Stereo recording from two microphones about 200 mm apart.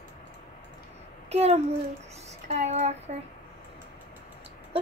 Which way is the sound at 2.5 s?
35° right (ahead or behind).